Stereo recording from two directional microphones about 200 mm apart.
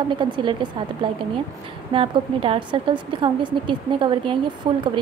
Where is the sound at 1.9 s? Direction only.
25° right (ahead or behind).